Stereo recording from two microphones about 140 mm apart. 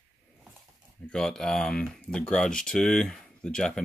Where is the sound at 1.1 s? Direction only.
5° left (ahead or behind).